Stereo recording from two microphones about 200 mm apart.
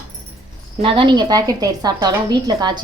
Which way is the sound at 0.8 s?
25° right (ahead or behind).